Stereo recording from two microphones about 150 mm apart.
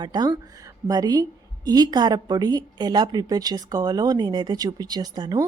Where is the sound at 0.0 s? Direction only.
25° right (ahead or behind).